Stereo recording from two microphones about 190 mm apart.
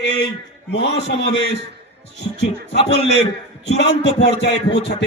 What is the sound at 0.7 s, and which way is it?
Speech, 65° left (ahead or behind).